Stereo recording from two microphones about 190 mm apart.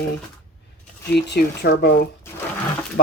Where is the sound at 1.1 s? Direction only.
60° left (ahead or behind).